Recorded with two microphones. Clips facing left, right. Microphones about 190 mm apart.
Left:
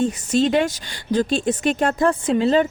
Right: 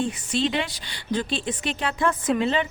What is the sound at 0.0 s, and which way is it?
Speech, 45° left (ahead or behind).